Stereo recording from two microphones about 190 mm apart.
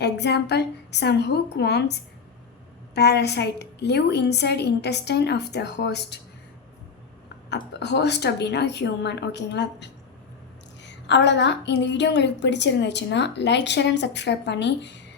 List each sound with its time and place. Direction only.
0.0 s a woman's voice: 60° left (ahead or behind)
7.5 s a woman's voice: 65° left (ahead or behind)